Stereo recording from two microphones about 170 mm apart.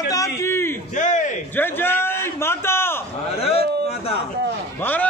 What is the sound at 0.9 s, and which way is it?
Speech, 45° left (ahead or behind).